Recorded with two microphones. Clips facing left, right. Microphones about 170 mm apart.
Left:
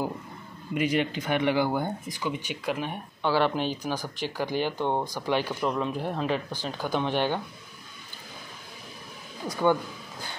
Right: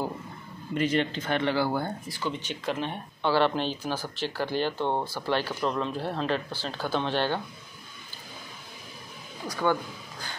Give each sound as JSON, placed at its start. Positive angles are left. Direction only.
{"t": 0.7, "sound": "speech", "side_deg": 10}
{"t": 9.5, "sound": "speech", "side_deg": 20}